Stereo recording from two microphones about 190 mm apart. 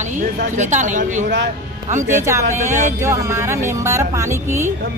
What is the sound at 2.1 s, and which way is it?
Speech, 15° right (ahead or behind).